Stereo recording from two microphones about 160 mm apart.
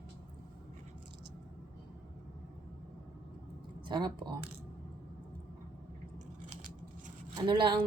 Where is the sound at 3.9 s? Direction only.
25° right (ahead or behind).